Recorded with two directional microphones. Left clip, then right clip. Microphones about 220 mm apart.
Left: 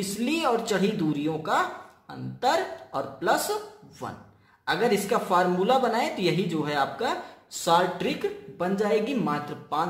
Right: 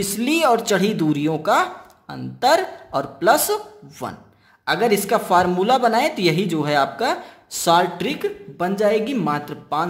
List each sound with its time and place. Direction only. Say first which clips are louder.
0.2 s speech: right 8 dB; 40° right (ahead or behind)